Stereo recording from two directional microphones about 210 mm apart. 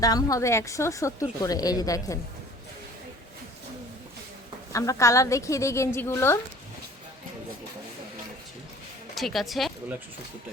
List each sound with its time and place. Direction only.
0.0 s a woman's voice: 15° left (ahead or behind)
4.7 s a woman's voice: 15° left (ahead or behind)
9.1 s speech: centre (ahead or behind)